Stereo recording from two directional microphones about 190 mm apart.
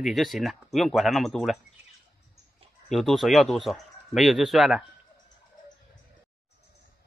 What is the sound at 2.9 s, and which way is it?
Speech, centre (ahead or behind).